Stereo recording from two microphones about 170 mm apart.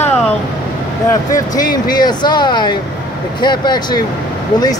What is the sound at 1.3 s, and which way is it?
Speech, 25° left (ahead or behind).